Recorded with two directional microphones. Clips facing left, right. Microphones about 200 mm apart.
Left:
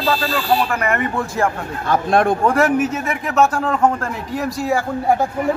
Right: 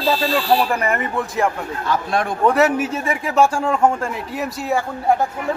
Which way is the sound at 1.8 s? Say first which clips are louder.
Left 5 dB; 50° left (ahead or behind).